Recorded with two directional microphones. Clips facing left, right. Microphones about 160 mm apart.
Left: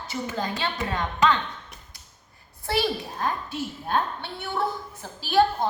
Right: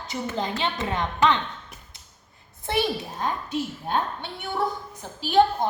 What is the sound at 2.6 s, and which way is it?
A woman's voice, 20° right (ahead or behind).